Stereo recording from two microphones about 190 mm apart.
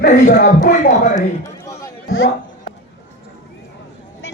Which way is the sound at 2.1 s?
80° left.